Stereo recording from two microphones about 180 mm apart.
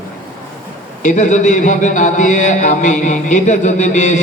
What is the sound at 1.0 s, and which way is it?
A man's voice, 45° left (ahead or behind).